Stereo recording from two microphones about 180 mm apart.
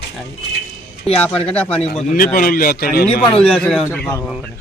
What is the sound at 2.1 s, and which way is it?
A man's voice, 50° left (ahead or behind).